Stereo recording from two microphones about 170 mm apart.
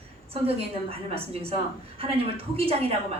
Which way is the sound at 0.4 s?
35° right (ahead or behind).